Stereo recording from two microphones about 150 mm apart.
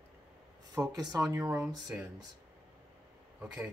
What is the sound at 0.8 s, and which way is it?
Speech, 25° right (ahead or behind).